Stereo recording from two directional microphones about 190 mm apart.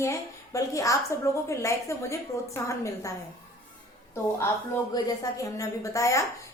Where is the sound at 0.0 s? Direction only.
15° left (ahead or behind).